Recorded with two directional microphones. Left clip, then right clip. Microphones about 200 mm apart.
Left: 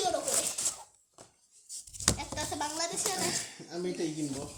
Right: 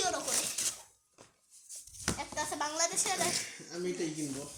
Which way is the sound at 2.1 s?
30° right (ahead or behind).